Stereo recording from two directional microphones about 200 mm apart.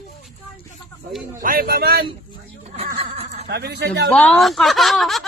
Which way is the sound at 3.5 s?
55° right (ahead or behind).